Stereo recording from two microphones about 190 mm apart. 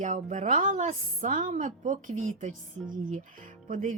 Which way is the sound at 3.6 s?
45° right (ahead or behind).